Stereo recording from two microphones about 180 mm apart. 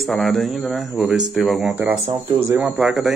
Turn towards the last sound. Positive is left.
turn(degrees=-5)  # may be behind; listen again after turning